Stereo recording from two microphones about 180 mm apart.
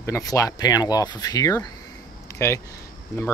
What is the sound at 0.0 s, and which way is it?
Speech, 15° left (ahead or behind).